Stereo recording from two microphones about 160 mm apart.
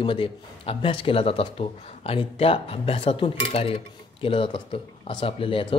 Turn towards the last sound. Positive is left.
turn(degrees=35)  # may be behind; listen again after turning